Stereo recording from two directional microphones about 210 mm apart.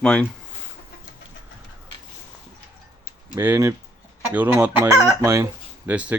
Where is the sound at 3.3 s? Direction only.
10° right (ahead or behind).